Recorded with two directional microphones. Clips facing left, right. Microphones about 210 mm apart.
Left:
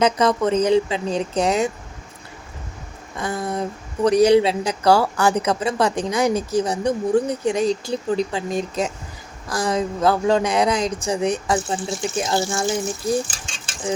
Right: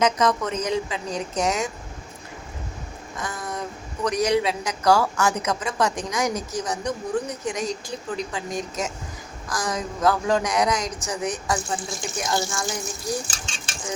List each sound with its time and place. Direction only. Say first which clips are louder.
0.0 s a woman's voice: left 4 dB; 30° left (ahead or behind)
3.2 s a woman's voice: left 7 dB; 30° left (ahead or behind)